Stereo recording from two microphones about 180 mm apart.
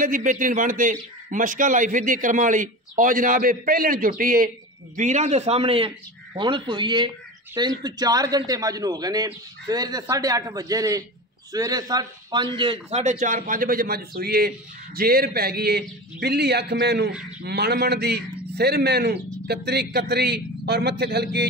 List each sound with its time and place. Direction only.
0.0 s a man's voice: 45° right (ahead or behind); by 13.0 s 30° right (ahead or behind)
13.0 s a man's voice: 40° right (ahead or behind); by 21.5 s 65° right (ahead or behind)